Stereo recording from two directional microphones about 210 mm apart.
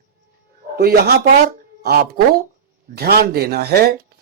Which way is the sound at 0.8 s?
50° right (ahead or behind).